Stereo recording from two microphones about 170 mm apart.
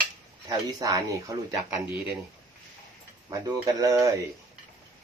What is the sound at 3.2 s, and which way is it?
Speech, 20° right (ahead or behind).